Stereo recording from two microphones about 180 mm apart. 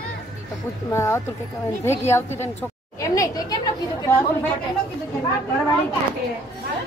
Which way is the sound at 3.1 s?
20° left (ahead or behind).